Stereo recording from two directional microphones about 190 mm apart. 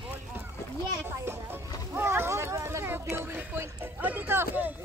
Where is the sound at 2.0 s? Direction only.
15° right (ahead or behind).